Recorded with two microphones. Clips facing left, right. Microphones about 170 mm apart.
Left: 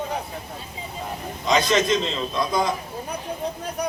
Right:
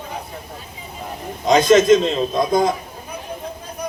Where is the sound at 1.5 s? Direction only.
50° right (ahead or behind).